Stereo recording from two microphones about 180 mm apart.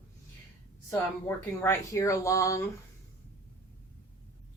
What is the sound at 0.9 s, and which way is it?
A woman's voice, 15° left (ahead or behind).